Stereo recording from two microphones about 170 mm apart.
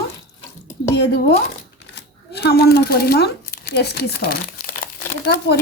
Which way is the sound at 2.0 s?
75° left (ahead or behind).